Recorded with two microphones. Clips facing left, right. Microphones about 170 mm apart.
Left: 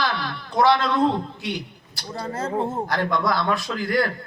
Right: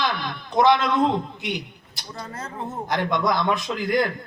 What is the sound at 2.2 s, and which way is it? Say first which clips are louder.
Speech: left 8 dB; 30° left (ahead or behind).